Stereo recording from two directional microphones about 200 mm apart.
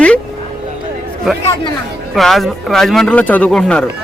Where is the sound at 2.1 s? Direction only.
Centre (ahead or behind).